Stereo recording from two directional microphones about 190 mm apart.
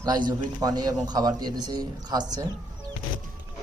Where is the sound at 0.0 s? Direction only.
20° right (ahead or behind).